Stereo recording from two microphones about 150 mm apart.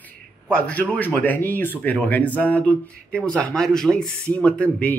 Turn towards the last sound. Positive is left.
turn(degrees=10)  # may be behind; listen again after turning